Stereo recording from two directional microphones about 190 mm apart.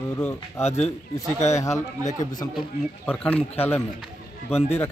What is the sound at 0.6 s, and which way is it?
Speech, 35° left (ahead or behind).